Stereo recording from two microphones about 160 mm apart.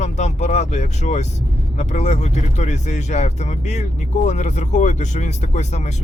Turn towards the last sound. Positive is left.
turn(degrees=45)  # may be behind; listen again after turning